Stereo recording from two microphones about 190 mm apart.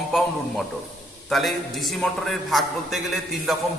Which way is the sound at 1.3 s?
Centre (ahead or behind).